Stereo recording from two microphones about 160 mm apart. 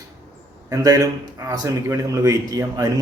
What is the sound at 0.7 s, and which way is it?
A man's voice, 25° right (ahead or behind).